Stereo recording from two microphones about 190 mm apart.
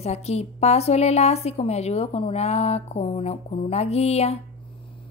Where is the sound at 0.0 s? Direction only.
35° left (ahead or behind).